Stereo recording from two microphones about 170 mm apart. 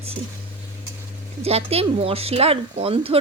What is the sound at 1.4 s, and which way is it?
Speech, 35° right (ahead or behind).